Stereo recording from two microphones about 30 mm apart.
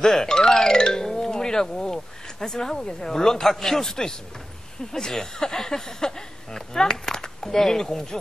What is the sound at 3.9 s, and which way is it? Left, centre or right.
Speech, centre.